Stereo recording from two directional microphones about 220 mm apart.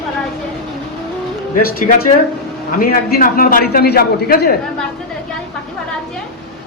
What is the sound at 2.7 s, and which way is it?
A man's voice, 40° left (ahead or behind).